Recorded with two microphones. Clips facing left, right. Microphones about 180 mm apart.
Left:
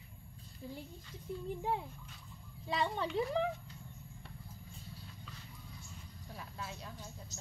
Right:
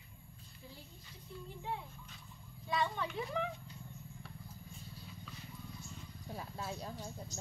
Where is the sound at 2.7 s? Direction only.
30° left (ahead or behind).